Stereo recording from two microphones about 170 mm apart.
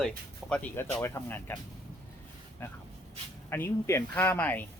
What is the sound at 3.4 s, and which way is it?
Speech, 15° left (ahead or behind).